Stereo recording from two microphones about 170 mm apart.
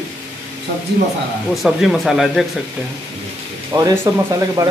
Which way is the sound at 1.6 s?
Centre (ahead or behind).